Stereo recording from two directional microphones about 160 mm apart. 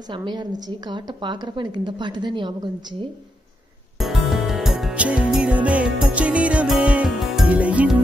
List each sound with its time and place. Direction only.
0.0 s a woman's voice: 30° right (ahead or behind)
4.0 s music: centre (ahead or behind)